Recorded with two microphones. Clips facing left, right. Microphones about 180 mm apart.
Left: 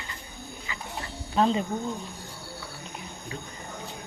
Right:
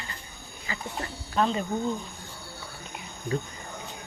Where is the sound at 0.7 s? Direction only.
40° right (ahead or behind).